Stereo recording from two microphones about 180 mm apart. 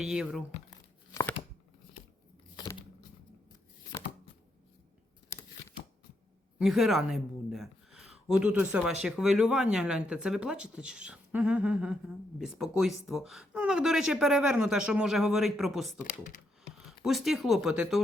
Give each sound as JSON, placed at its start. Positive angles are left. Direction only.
{"t": 0.0, "sound": "a woman's voice", "side_deg": -5}
{"t": 1.1, "sound": "a sound", "side_deg": 15}
{"t": 2.6, "sound": "a sound", "side_deg": 25}
{"t": 6.6, "sound": "a woman's voice", "side_deg": 0}
{"t": 16.0, "sound": "speech", "side_deg": 45}
{"t": 17.0, "sound": "a woman's voice", "side_deg": 0}